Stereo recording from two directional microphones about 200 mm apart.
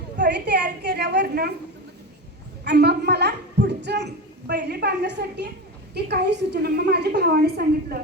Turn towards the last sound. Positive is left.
turn(degrees=-50)  # may be behind; listen again after turning